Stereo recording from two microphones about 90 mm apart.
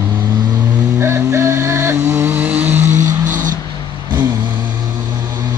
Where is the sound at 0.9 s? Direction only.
30° right (ahead or behind).